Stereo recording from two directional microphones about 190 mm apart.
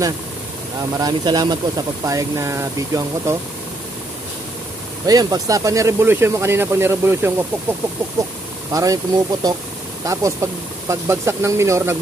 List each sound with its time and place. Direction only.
0.9 s speech: 20° right (ahead or behind)
5.0 s speech: 20° right (ahead or behind)